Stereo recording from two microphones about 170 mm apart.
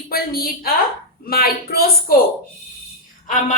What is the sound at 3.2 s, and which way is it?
Speech, 50° left (ahead or behind).